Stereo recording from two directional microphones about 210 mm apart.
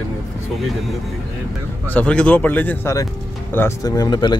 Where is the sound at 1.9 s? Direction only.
5° left (ahead or behind).